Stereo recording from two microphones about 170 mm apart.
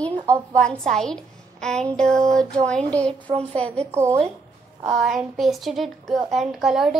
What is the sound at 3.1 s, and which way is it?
Speech, 35° right (ahead or behind).